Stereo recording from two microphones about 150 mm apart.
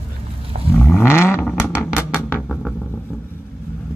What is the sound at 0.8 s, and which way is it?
Vehicle, 15° left (ahead or behind).